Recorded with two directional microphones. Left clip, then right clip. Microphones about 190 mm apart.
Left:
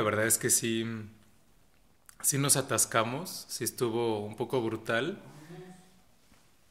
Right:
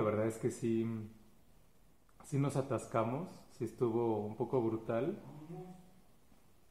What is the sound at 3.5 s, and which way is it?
Speech, 20° left (ahead or behind).